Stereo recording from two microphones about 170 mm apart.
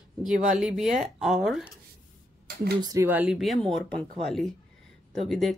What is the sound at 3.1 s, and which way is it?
Speech, 5° right (ahead or behind).